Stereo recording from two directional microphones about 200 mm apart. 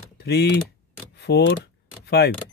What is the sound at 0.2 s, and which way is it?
Speech, 55° left (ahead or behind).